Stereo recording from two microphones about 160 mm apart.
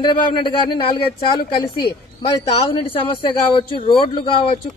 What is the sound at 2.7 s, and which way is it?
A woman's voice, 35° left (ahead or behind).